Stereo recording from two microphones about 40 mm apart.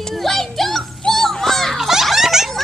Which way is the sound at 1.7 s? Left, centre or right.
Centre.